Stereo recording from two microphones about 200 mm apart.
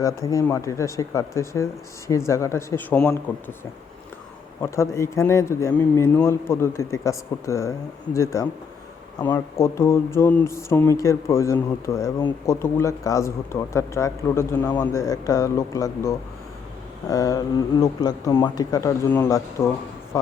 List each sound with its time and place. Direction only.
0.0 s speech: 15° left (ahead or behind)
4.6 s speech: 15° left (ahead or behind)